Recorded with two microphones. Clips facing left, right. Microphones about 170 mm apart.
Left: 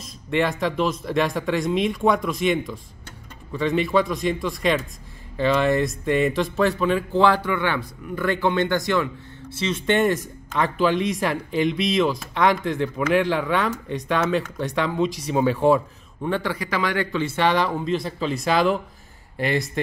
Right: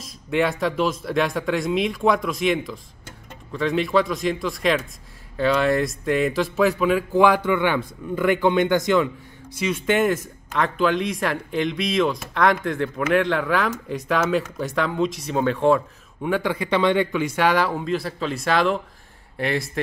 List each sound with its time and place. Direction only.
0.0 s speech: centre (ahead or behind)
16.2 s speech: 10° right (ahead or behind)
16.5 s speech: 25° right (ahead or behind); by 19.8 s centre (ahead or behind)